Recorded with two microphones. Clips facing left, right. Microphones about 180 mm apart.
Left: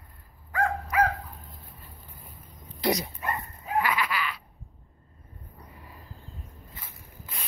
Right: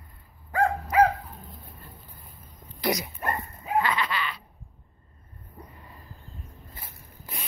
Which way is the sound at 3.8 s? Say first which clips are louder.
Even; 5° left (ahead or behind).